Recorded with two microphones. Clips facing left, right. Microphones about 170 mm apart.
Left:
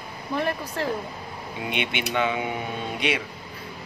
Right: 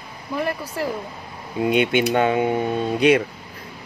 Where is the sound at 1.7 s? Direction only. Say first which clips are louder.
Right 8 dB; 45° right (ahead or behind).